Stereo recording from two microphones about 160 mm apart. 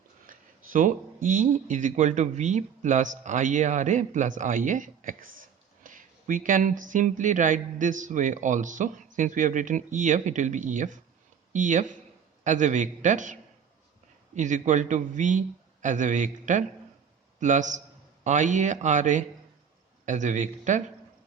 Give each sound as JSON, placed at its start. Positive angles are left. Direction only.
{"t": 0.3, "sound": "speech", "side_deg": -55}
{"t": 14.3, "sound": "a man's voice", "side_deg": -50}